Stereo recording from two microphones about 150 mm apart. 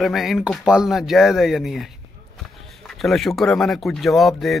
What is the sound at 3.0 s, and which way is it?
Speech, centre (ahead or behind).